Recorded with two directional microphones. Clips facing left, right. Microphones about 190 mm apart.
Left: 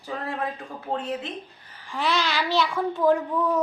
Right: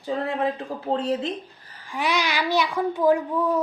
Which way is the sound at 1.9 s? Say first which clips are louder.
Right 1 dB; 15° right (ahead or behind).